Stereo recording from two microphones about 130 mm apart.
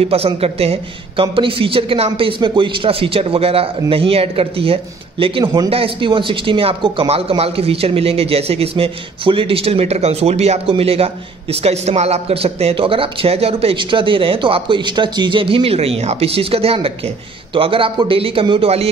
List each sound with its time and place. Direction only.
0.0 s speech: 50° right (ahead or behind)
5.4 s a man's voice: 35° right (ahead or behind)
5.7 s speech: 45° right (ahead or behind)